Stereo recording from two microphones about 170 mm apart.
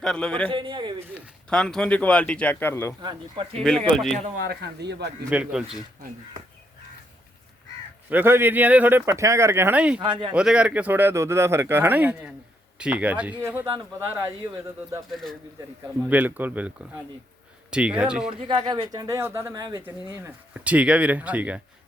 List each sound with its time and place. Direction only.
0.0 s speech: 5° left (ahead or behind)
0.5 s a man's voice: 30° right (ahead or behind)
0.9 s a sound: 10° right (ahead or behind)
1.5 s speech: 5° left (ahead or behind)
3.0 s speech: 30° right (ahead or behind)
3.6 s speech: centre (ahead or behind)
4.4 s a man's voice: 80° right
5.3 s speech: 5° right (ahead or behind)
8.1 s speech: 10° right (ahead or behind)
10.0 s speech: 30° right (ahead or behind)
10.3 s speech: 5° right (ahead or behind)
15.1 s speech: centre (ahead or behind)
16.0 s speech: 10° right (ahead or behind)
18.3 s speech: 30° right (ahead or behind); by 21.6 s 10° right (ahead or behind)